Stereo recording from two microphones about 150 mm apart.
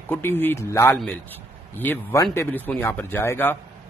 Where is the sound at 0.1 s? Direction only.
15° left (ahead or behind).